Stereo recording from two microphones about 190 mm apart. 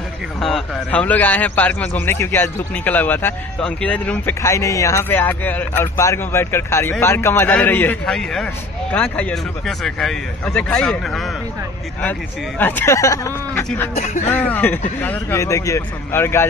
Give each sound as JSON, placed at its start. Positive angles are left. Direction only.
{"t": 0.4, "sound": "a man's voice", "side_deg": 5}
{"t": 13.9, "sound": "speech", "side_deg": 40}
{"t": 14.3, "sound": "a man's voice", "side_deg": 10}